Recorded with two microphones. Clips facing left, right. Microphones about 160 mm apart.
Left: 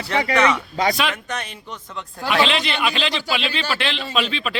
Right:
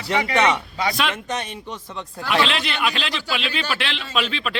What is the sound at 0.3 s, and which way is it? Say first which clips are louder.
Speech: left 1 dB; 25° right (ahead or behind).